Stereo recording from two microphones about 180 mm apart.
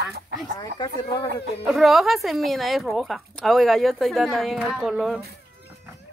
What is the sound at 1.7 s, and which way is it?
Speech, centre (ahead or behind).